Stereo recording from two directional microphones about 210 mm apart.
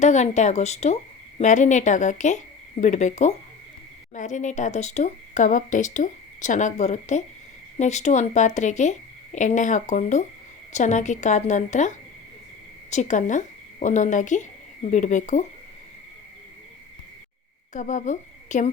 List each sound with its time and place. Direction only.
0.0 s a woman's voice: 35° left (ahead or behind)
17.7 s speech: 35° left (ahead or behind)